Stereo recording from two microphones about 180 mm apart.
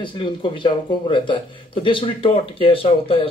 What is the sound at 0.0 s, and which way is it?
A man's voice, 25° left (ahead or behind).